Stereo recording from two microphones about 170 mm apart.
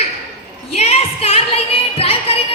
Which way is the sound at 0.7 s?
35° left (ahead or behind).